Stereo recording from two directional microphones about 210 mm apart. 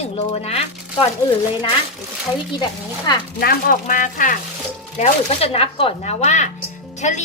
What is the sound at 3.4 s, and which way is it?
Speech, 45° left (ahead or behind).